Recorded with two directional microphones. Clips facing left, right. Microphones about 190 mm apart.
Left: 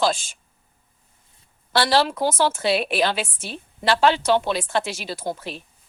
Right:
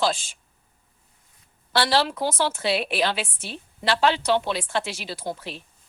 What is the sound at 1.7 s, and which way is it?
A woman's voice, 45° left (ahead or behind).